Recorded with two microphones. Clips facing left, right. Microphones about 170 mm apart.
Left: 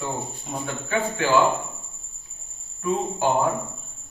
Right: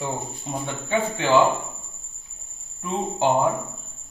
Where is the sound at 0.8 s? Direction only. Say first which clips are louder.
Right 2 dB; 25° right (ahead or behind).